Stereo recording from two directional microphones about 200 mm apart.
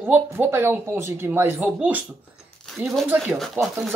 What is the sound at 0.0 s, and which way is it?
Speech, 10° right (ahead or behind).